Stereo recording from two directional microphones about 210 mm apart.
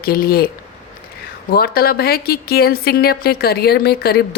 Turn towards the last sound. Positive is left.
turn(degrees=50)  # may be behind; listen again after turning